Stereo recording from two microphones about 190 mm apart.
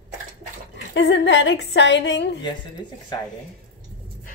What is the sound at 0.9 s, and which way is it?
A woman's voice, 65° left (ahead or behind).